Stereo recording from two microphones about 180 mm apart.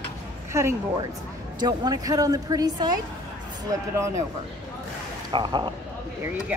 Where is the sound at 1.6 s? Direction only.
20° right (ahead or behind).